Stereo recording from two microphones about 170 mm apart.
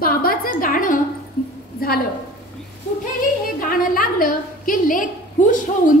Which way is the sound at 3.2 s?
55° left (ahead or behind).